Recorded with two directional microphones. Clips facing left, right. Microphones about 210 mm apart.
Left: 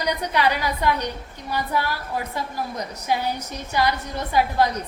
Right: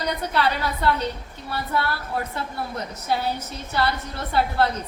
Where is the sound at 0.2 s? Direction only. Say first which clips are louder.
Left 1 dB; 15° left (ahead or behind).